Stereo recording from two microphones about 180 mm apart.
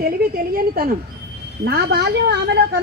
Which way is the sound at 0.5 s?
55° right (ahead or behind).